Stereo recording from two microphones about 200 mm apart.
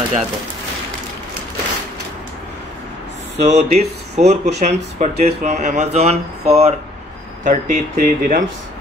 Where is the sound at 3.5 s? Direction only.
35° right (ahead or behind).